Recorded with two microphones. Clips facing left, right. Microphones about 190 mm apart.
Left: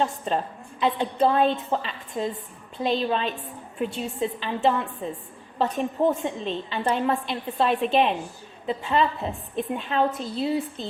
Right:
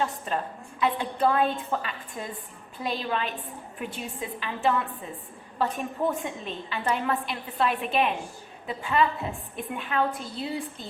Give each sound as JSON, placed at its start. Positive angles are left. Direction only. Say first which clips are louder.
{"t": 0.0, "sound": "a woman's voice", "louder": "left 4 dB", "side_deg": 25}